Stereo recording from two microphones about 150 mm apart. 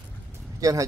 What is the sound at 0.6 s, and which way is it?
Speech, 20° right (ahead or behind).